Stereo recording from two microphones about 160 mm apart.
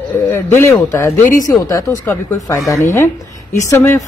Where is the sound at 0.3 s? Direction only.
15° left (ahead or behind).